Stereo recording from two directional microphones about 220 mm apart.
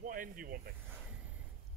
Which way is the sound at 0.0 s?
40° right (ahead or behind).